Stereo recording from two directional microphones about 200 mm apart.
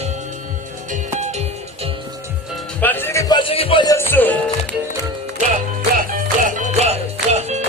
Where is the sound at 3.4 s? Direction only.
30° left (ahead or behind); by 4.7 s 10° left (ahead or behind).